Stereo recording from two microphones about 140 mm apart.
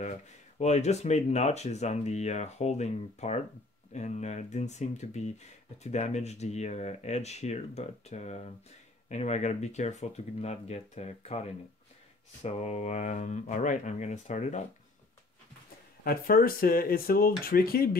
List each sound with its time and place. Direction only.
0.6 s speech: 55° left (ahead or behind)
16.0 s speech: 90° left